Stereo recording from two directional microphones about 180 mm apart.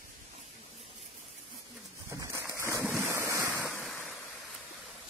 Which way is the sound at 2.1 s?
20° right (ahead or behind).